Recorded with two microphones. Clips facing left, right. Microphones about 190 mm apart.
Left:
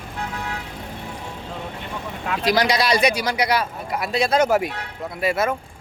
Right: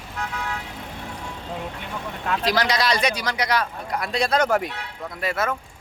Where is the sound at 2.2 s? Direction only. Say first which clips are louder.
Left 3 dB; 5° left (ahead or behind).